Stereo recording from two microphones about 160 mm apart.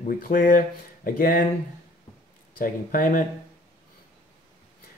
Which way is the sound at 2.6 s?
60° left (ahead or behind).